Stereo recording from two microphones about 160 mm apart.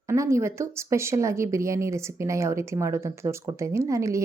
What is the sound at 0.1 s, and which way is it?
Speech, 20° right (ahead or behind).